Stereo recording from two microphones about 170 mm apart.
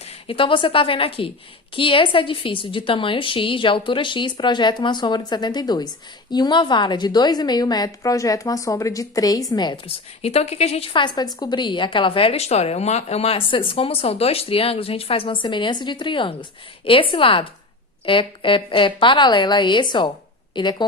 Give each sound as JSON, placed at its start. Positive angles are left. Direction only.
{"t": 0.0, "sound": "a woman's voice", "side_deg": 30}
{"t": 10.2, "sound": "a woman's voice", "side_deg": 35}